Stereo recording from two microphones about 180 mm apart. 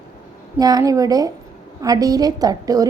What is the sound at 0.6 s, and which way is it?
A woman's voice, 20° right (ahead or behind).